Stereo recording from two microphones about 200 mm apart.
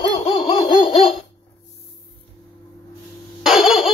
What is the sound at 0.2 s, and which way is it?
Baby laughter, 25° left (ahead or behind).